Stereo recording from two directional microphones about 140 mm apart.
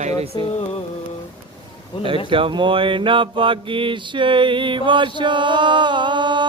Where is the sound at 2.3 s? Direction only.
35° right (ahead or behind).